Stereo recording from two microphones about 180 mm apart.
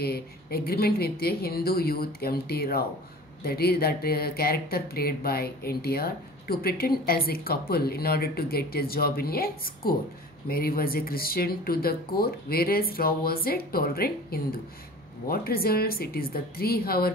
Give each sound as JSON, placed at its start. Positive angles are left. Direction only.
{"t": 0.0, "sound": "speech", "side_deg": 60}